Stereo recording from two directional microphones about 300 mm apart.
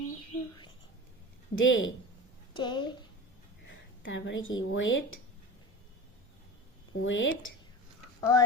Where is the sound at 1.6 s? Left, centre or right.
Left.